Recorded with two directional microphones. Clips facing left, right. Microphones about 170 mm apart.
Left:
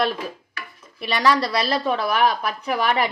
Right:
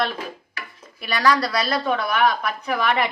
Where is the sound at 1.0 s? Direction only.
25° left (ahead or behind).